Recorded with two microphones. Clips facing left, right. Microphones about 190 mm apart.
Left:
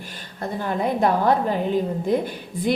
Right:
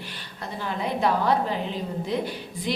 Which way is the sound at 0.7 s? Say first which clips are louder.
Left 4 dB; 50° left (ahead or behind).